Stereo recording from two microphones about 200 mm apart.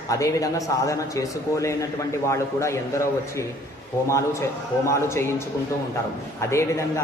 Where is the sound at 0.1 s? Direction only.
15° left (ahead or behind).